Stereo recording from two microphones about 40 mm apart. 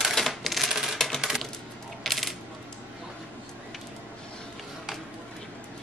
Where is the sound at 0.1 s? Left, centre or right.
Centre.